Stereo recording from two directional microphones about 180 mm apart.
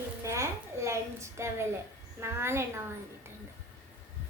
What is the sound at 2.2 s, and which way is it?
Speech, 15° right (ahead or behind).